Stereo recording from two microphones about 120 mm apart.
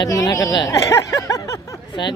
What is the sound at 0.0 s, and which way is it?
A woman's voice, 30° left (ahead or behind).